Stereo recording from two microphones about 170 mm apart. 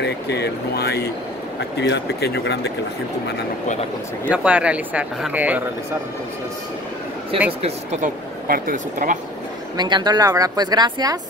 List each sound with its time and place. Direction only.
0.0 s speech: 75° left (ahead or behind)
4.3 s speech: 10° right (ahead or behind)
7.6 s speech: 40° right (ahead or behind)
8.5 s speech: 55° right (ahead or behind)
9.8 s speech: 25° right (ahead or behind)